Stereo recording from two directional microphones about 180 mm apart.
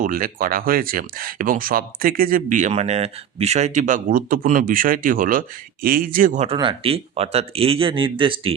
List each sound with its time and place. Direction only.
0.0 s speech: 50° right (ahead or behind); by 8.5 s 30° right (ahead or behind)